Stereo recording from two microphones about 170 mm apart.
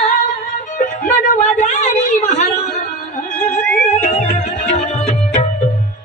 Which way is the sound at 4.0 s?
40° left (ahead or behind).